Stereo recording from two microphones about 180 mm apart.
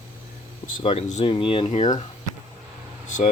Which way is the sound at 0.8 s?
35° left (ahead or behind).